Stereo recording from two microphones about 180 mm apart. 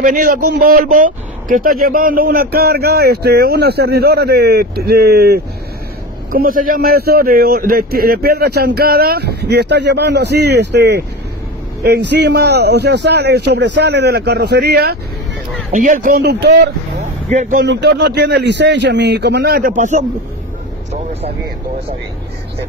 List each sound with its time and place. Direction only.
0.0 s a man's voice: 50° right (ahead or behind)
15.7 s a man's voice: 45° right (ahead or behind); by 16.7 s 65° right (ahead or behind)
17.3 s a man's voice: 45° right (ahead or behind)
17.6 s a man's voice: 70° right (ahead or behind); by 21.3 s 35° right (ahead or behind)